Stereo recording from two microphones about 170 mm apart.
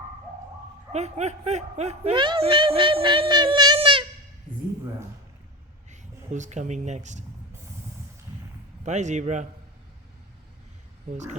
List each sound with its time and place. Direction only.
0.9 s speech: 40° right (ahead or behind)
5.9 s speech: 45° right (ahead or behind)
8.8 s speech: 45° right (ahead or behind)
11.1 s speech: 45° right (ahead or behind)